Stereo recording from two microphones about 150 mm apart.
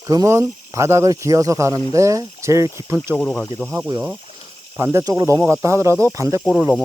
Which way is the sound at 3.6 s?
20° right (ahead or behind).